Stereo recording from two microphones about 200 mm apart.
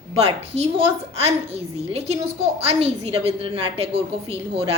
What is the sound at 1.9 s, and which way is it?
A woman's voice, 30° right (ahead or behind).